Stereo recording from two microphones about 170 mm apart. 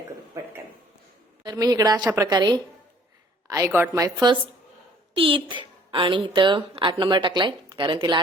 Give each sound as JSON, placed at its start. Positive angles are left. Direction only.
{"t": 1.5, "sound": "a woman's voice", "side_deg": -20}